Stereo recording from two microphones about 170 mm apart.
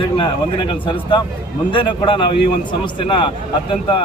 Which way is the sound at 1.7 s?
30° left (ahead or behind).